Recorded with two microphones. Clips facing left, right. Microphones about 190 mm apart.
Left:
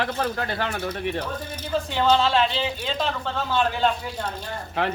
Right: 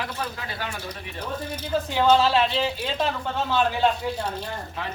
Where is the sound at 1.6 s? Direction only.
5° right (ahead or behind).